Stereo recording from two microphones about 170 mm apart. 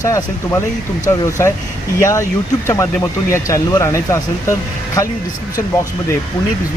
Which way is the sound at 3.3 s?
20° left (ahead or behind).